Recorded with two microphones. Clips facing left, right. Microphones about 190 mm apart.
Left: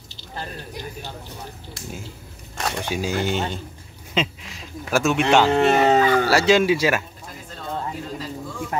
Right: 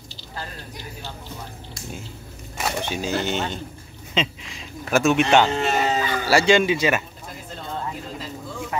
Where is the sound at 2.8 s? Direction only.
10° left (ahead or behind).